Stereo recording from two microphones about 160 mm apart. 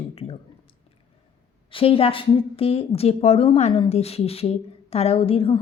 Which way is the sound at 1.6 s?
35° left (ahead or behind).